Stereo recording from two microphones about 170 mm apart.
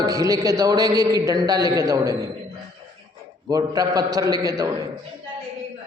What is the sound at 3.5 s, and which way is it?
A man's voice, 20° right (ahead or behind).